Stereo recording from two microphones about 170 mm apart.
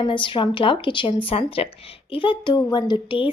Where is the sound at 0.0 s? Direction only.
30° left (ahead or behind).